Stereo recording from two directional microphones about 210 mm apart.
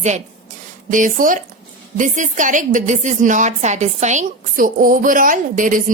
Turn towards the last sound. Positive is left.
turn(degrees=-40)  # may be behind; listen again after turning